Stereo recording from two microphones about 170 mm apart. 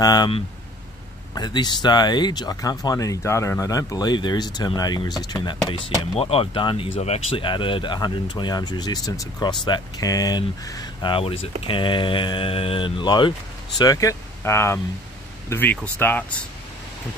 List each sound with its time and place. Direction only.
0.0 s speech: 25° left (ahead or behind)